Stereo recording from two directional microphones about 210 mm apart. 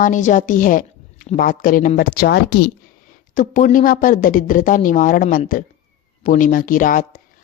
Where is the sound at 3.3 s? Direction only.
35° left (ahead or behind).